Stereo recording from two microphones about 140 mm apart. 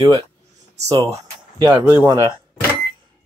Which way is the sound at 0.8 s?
25° right (ahead or behind).